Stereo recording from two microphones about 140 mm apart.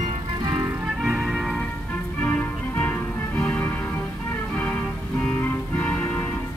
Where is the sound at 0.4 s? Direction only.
35° right (ahead or behind).